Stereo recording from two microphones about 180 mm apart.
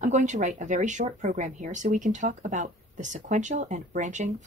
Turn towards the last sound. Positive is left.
turn(degrees=-40)  # may be behind; listen again after turning